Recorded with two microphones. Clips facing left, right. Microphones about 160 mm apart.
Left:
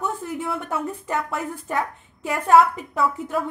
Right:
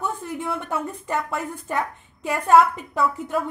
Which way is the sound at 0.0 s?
Centre (ahead or behind).